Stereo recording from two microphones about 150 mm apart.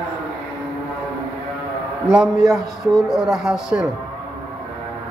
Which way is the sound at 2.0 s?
5° right (ahead or behind).